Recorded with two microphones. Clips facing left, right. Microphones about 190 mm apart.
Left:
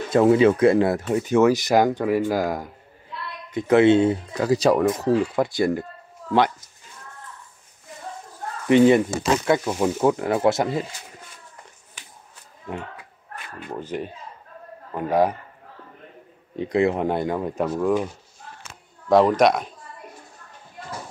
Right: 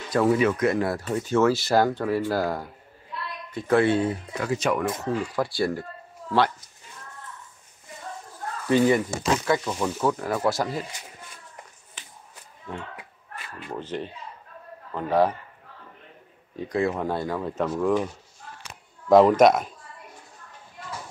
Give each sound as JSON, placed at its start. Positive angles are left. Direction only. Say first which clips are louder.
{"t": 0.1, "sound": "speech", "louder": "left 5 dB", "side_deg": 25}
{"t": 5.0, "sound": "speech", "louder": "left 6 dB", "side_deg": 25}
{"t": 8.6, "sound": "speech", "louder": "left 5 dB", "side_deg": 20}
{"t": 13.7, "sound": "a man's voice", "louder": "left 2 dB", "side_deg": 10}
{"t": 16.5, "sound": "speech", "louder": "left 5 dB", "side_deg": 20}
{"t": 17.8, "sound": "a man's voice", "louder": "left 1 dB", "side_deg": 5}